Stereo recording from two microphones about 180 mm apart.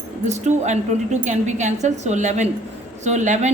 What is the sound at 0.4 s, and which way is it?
A woman's voice, 40° right (ahead or behind).